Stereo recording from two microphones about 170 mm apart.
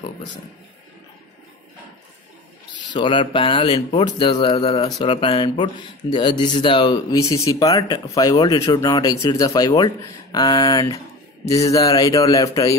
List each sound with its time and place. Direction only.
2.9 s speech: 30° left (ahead or behind)